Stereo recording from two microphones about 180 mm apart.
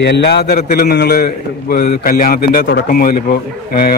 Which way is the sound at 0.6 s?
50° left (ahead or behind).